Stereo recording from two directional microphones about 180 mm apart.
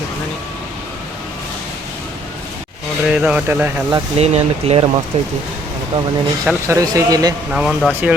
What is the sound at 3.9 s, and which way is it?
Speech, 35° right (ahead or behind).